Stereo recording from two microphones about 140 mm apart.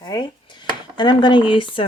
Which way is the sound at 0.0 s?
30° left (ahead or behind).